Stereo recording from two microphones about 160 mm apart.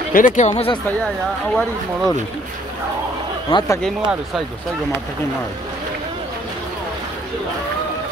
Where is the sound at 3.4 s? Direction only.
20° left (ahead or behind).